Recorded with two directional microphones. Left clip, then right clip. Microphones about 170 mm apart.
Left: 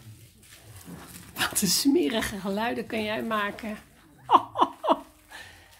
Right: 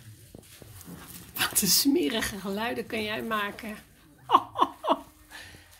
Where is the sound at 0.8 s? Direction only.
15° left (ahead or behind).